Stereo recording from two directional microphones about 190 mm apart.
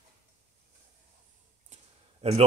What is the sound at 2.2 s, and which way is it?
Speech, 35° right (ahead or behind).